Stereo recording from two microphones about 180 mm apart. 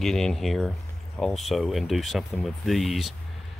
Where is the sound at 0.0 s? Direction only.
Centre (ahead or behind).